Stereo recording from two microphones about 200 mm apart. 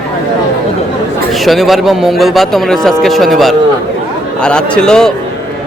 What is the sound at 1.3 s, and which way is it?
A man's voice, centre (ahead or behind).